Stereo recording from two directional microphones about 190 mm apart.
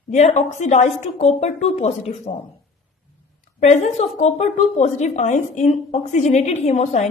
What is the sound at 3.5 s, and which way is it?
Speech, 40° left (ahead or behind).